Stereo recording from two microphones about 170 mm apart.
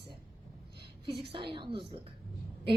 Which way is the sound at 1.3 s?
30° right (ahead or behind).